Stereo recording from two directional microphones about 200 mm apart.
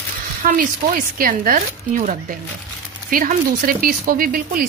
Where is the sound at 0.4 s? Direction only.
40° right (ahead or behind).